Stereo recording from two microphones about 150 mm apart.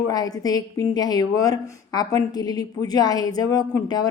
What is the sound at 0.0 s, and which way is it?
A woman's voice, 25° left (ahead or behind).